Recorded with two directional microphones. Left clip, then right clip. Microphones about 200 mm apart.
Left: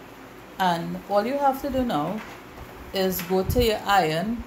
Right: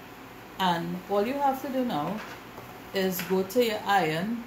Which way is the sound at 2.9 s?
40° left (ahead or behind).